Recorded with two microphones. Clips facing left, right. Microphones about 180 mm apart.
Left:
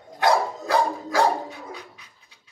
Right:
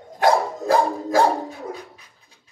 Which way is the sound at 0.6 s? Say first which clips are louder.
Right 4 dB; 45° right (ahead or behind).